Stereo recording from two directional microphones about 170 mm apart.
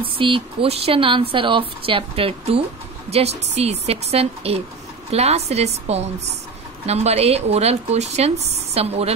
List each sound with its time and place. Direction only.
0.2 s speech: 30° right (ahead or behind)